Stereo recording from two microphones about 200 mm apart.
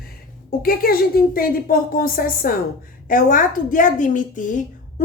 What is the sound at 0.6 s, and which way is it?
A woman's voice, 45° left (ahead or behind).